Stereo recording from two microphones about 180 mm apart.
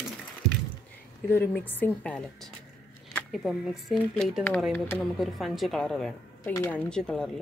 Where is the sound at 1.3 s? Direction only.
10° left (ahead or behind).